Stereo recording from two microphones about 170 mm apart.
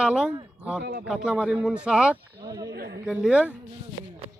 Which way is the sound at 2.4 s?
20° right (ahead or behind).